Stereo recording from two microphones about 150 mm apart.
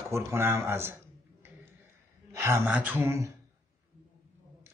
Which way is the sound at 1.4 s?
15° right (ahead or behind).